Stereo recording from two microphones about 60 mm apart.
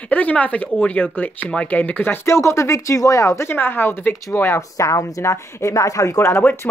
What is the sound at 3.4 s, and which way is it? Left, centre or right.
Speech, left.